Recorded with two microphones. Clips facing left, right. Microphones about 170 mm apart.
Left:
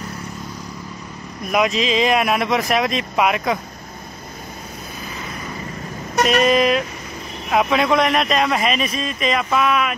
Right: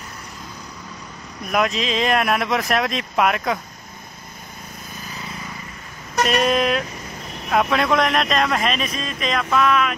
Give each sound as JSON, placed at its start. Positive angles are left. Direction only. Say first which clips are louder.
{"t": 1.5, "sound": "speech", "louder": "left 3 dB", "side_deg": 0}
{"t": 6.2, "sound": "speech", "louder": "left 3 dB", "side_deg": 0}